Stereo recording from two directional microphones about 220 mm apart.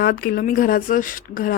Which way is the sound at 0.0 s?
40° left (ahead or behind).